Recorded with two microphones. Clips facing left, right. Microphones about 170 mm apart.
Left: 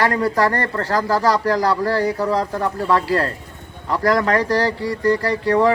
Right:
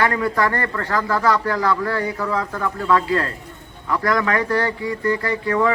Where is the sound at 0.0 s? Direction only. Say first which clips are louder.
Left 2 dB; 35° left (ahead or behind).